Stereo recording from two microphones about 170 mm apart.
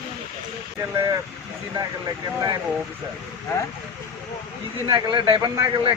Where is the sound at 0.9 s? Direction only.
20° right (ahead or behind).